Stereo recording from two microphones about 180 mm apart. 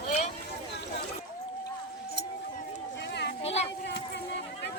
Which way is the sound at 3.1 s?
70° left (ahead or behind).